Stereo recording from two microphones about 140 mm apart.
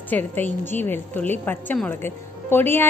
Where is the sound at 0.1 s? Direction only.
10° left (ahead or behind).